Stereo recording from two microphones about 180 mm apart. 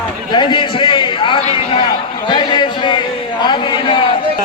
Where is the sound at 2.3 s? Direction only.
25° left (ahead or behind).